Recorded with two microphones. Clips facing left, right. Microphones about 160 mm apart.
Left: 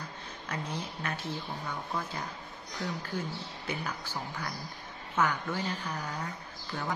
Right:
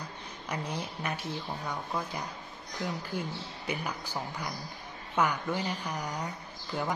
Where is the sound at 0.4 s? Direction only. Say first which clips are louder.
Right 2 dB; 15° right (ahead or behind).